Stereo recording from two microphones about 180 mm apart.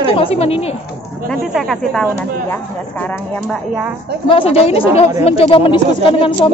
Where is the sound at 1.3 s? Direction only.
Centre (ahead or behind).